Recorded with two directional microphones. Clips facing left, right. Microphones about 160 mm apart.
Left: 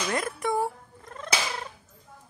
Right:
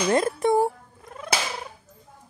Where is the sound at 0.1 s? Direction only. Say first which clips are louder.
Right 8 dB; 25° right (ahead or behind).